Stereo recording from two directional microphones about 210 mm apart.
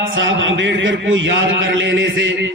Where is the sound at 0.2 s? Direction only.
65° right (ahead or behind).